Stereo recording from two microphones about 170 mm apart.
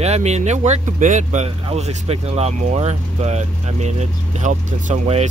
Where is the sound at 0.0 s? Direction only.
40° right (ahead or behind).